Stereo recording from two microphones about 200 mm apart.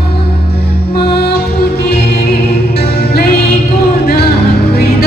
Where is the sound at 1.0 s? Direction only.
55° left (ahead or behind).